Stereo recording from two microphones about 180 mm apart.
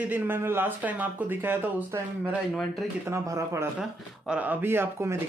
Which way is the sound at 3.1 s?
15° right (ahead or behind).